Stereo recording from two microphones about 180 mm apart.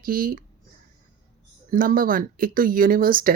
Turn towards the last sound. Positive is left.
turn(degrees=-50)  # may be behind; listen again after turning